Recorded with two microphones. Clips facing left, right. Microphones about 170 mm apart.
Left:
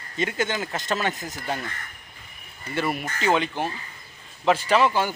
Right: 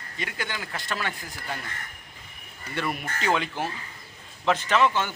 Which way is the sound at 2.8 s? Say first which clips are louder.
Left 3 dB; 5° left (ahead or behind).